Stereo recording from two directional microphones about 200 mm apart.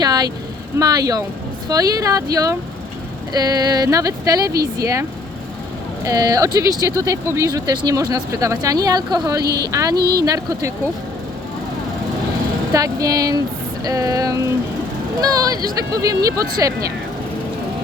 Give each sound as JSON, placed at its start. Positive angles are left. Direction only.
{"t": 0.0, "sound": "vehicle", "side_deg": -20}
{"t": 0.8, "sound": "speech", "side_deg": -20}
{"t": 6.1, "sound": "speech", "side_deg": -15}
{"t": 9.4, "sound": "speech", "side_deg": -50}
{"t": 10.2, "sound": "speech", "side_deg": -15}
{"t": 12.7, "sound": "speech", "side_deg": -15}